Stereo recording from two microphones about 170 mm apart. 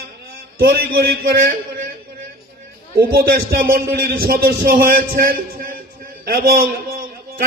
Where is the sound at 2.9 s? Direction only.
60° right (ahead or behind).